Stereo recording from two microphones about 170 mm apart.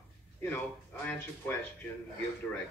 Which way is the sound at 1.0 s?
10° left (ahead or behind).